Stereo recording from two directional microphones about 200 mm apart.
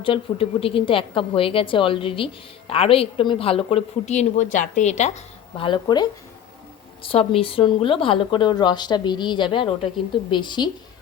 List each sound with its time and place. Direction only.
0.0 s speech: 25° left (ahead or behind)